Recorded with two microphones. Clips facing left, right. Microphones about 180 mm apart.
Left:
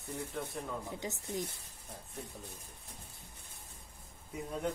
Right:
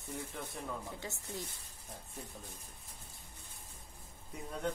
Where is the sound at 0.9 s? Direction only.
20° left (ahead or behind).